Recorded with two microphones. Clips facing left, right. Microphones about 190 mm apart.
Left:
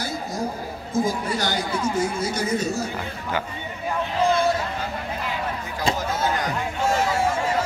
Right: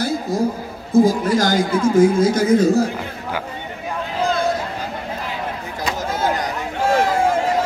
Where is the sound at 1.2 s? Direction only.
90° right.